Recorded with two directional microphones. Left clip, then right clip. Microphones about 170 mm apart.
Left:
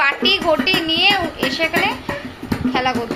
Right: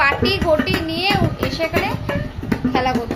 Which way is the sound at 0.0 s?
Centre (ahead or behind).